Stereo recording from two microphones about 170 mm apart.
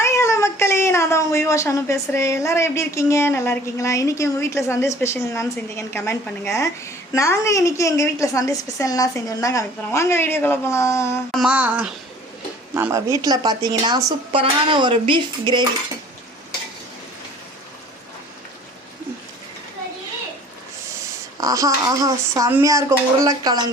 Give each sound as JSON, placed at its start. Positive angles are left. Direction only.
{"t": 0.0, "sound": "speech", "side_deg": 15}
{"t": 11.3, "sound": "a sound", "side_deg": 0}
{"t": 11.5, "sound": "speech", "side_deg": -10}
{"t": 21.4, "sound": "speech", "side_deg": -20}